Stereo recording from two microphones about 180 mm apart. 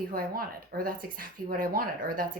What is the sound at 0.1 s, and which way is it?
Speech, 55° right (ahead or behind).